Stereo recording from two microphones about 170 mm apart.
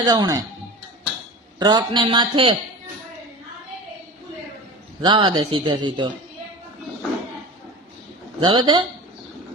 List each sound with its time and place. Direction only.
0.0 s a man's voice: 25° right (ahead or behind)
1.5 s a man's voice: 25° right (ahead or behind)
5.0 s a man's voice: 25° right (ahead or behind)
8.4 s a man's voice: 25° right (ahead or behind)